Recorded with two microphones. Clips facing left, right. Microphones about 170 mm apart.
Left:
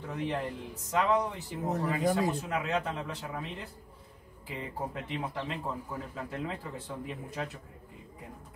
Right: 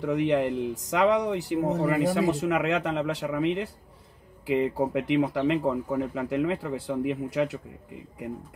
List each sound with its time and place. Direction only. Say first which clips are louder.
0.0 s a man's voice: right 10 dB; 90° right